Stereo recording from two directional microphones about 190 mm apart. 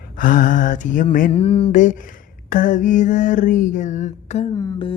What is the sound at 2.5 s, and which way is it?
Mantra, 45° left (ahead or behind).